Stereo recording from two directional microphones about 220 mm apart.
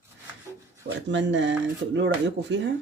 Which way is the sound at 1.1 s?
55° right (ahead or behind).